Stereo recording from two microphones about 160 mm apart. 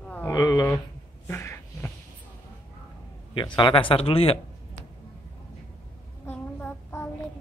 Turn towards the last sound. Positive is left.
turn(degrees=10)  # may be behind; listen again after turning